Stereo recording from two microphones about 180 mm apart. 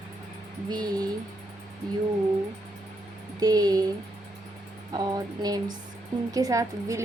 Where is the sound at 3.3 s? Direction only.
20° right (ahead or behind).